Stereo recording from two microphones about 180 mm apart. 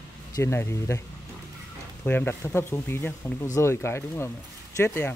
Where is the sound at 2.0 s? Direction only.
10° left (ahead or behind).